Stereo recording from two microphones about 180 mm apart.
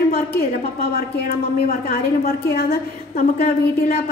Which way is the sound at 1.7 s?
55° left (ahead or behind).